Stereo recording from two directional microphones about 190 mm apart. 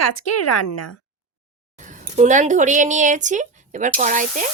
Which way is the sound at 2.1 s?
40° right (ahead or behind).